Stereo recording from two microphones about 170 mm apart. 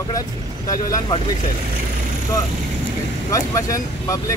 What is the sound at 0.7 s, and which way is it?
Speech, 20° left (ahead or behind).